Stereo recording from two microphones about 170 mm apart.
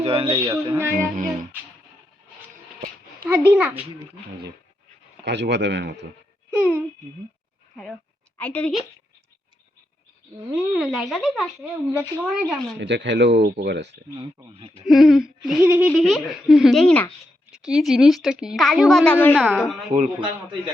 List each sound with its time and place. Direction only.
0.0 s speech: 35° right (ahead or behind)
0.5 s speech: 20° right (ahead or behind)
0.9 s a sound: 50° right (ahead or behind)
3.2 s a child's voice: 10° right (ahead or behind)
5.2 s speech: 90° right
6.6 s a child's voice: 10° right (ahead or behind)
8.4 s a woman's voice: 10° left (ahead or behind)
10.7 s speech: centre (ahead or behind)
12.8 s speech: 90° right
14.8 s speech: centre (ahead or behind)
19.1 s a woman's voice: 10° left (ahead or behind)